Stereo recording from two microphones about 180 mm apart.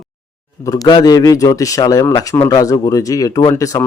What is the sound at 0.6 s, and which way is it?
A man's voice, 20° left (ahead or behind).